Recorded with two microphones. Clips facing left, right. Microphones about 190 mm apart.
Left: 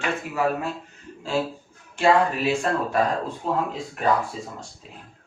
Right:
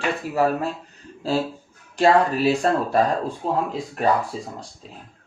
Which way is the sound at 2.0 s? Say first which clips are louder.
Right 2 dB; 35° right (ahead or behind).